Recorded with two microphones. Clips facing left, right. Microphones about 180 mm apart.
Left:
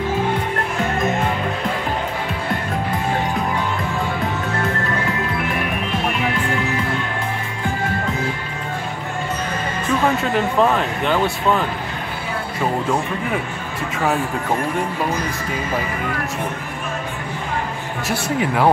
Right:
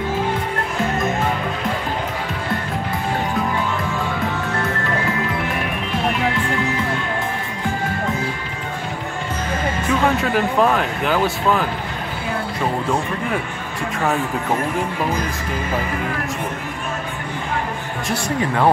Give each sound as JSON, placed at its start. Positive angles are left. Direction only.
{"t": 10.0, "sound": "speech", "side_deg": 0}
{"t": 13.9, "sound": "speech", "side_deg": 0}
{"t": 18.4, "sound": "speech", "side_deg": 5}